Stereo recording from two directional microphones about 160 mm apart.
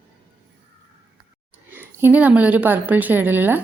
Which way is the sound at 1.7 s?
15° right (ahead or behind).